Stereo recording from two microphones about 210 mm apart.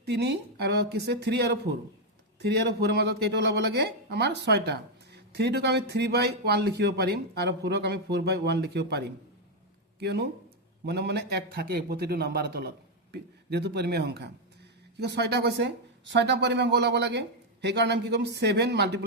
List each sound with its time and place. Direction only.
0.0 s speech: 55° right (ahead or behind)